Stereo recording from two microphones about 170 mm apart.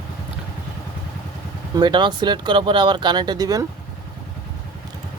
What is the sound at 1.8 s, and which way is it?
Speech, 25° right (ahead or behind).